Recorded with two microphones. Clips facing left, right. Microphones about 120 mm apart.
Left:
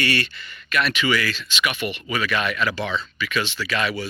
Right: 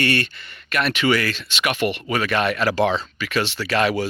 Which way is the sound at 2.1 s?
60° right (ahead or behind).